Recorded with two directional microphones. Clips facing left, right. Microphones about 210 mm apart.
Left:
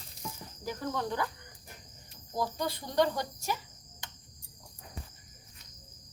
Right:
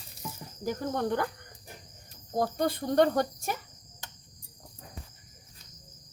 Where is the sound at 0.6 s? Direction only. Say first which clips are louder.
Right 4 dB; 55° right (ahead or behind).